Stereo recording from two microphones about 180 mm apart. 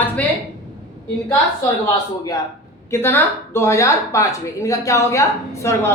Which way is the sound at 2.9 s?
10° left (ahead or behind).